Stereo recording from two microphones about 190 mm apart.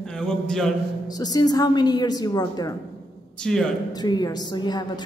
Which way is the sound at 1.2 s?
20° left (ahead or behind).